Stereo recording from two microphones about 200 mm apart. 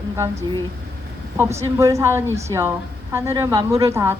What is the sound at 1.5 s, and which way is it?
A woman's voice, 15° right (ahead or behind).